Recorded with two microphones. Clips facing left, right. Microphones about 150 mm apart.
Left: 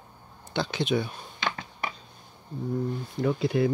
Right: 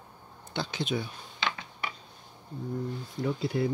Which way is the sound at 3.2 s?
80° left.